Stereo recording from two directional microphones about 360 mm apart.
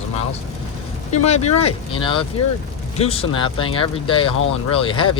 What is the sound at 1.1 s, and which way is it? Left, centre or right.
Speech, centre.